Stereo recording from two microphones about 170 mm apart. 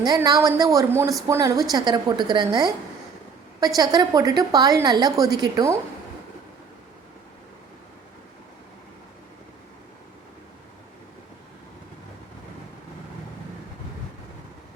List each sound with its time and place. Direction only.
0.0 s a woman's voice: 25° right (ahead or behind)
3.8 s a woman's voice: 20° right (ahead or behind)